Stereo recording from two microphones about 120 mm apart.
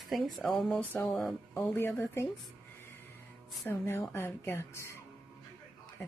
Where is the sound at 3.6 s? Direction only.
20° left (ahead or behind).